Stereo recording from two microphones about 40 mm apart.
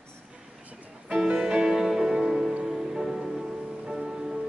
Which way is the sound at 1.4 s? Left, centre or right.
Centre.